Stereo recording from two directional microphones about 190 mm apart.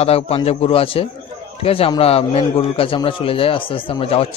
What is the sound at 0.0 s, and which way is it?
A man's voice, 30° left (ahead or behind).